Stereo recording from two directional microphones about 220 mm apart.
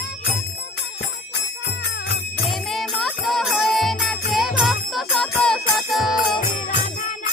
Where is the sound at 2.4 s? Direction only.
Centre (ahead or behind).